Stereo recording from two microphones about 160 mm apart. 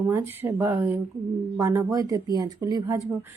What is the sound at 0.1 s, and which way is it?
Speech, 15° right (ahead or behind).